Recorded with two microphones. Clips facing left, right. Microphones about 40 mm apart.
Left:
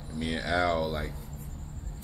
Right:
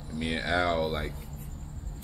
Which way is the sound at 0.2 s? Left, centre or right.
Centre.